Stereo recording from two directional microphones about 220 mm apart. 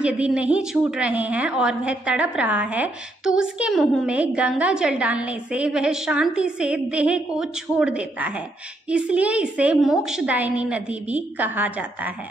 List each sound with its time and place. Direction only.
0.0 s a woman's voice: 5° right (ahead or behind)